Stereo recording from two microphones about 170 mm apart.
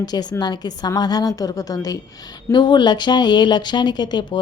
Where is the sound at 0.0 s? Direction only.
25° left (ahead or behind).